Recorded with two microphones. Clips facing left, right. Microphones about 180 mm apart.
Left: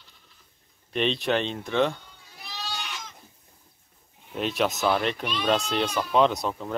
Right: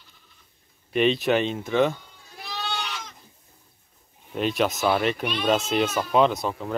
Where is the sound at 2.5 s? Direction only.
60° right (ahead or behind).